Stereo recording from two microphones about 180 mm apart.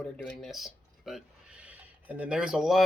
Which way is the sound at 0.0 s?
Centre (ahead or behind).